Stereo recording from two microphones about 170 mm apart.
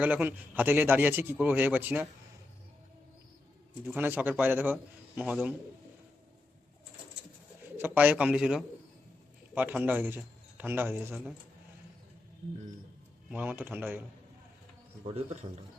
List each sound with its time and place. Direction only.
0.0 s a man's voice: 10° right (ahead or behind)
3.8 s a man's voice: 10° right (ahead or behind)
7.8 s a man's voice: 10° right (ahead or behind)
13.3 s a man's voice: 10° right (ahead or behind)
15.0 s a man's voice: 40° right (ahead or behind)